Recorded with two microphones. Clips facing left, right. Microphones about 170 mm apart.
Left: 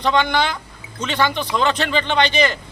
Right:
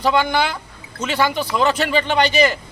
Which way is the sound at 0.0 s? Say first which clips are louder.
Right 1 dB; 5° right (ahead or behind).